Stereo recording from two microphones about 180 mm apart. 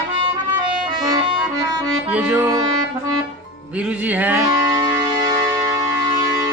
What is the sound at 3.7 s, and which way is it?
Music, 5° right (ahead or behind).